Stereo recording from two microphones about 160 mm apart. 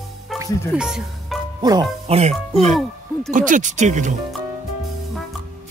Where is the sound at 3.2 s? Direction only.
55° right (ahead or behind).